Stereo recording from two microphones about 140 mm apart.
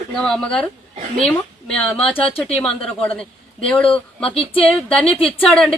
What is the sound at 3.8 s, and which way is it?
Speech, 40° left (ahead or behind).